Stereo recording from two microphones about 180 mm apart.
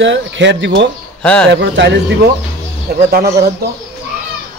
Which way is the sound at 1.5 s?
75° right (ahead or behind).